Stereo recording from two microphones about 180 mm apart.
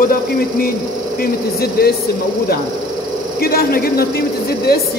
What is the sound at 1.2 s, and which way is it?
Speech, 60° left (ahead or behind).